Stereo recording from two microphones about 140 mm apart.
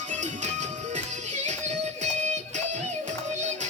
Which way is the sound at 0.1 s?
60° right (ahead or behind).